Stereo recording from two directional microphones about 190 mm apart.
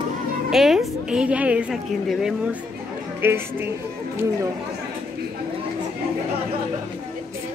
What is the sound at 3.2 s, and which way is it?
Speech, 10° right (ahead or behind).